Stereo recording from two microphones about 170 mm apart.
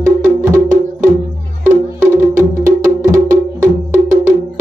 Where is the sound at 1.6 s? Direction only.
15° right (ahead or behind).